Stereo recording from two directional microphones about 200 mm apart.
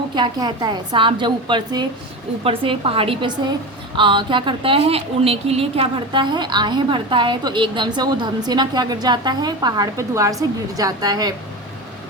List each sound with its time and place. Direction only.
0.2 s a woman's voice: 20° right (ahead or behind)